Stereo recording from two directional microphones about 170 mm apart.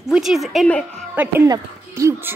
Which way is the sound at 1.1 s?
10° right (ahead or behind).